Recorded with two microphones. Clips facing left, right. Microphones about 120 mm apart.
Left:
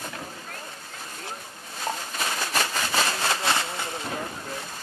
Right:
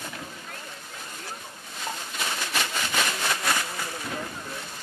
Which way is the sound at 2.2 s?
40° left (ahead or behind).